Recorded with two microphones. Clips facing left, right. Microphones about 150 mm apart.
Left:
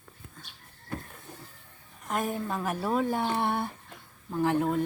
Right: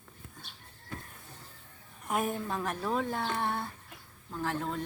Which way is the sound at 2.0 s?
5° right (ahead or behind).